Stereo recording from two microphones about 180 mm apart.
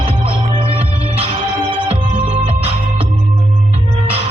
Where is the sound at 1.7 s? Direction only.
30° right (ahead or behind).